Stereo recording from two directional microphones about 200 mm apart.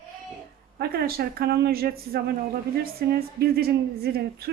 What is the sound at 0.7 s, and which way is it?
A woman's voice, 50° right (ahead or behind).